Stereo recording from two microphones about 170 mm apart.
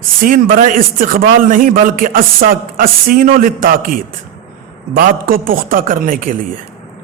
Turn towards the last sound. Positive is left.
turn(degrees=-55)  # may be behind; listen again after turning